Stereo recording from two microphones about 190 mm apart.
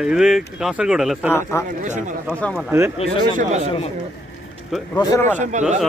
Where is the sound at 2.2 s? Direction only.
Centre (ahead or behind).